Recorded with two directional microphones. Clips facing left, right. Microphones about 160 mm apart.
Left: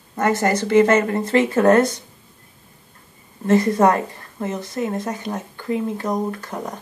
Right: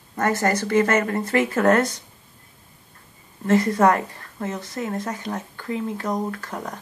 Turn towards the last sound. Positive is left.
turn(degrees=20)  # may be behind; listen again after turning